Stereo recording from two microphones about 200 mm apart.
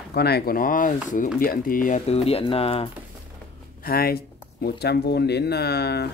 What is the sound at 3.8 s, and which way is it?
Speech, 50° left (ahead or behind).